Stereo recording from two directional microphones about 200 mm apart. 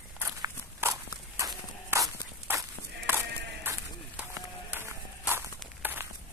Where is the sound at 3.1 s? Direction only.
10° right (ahead or behind).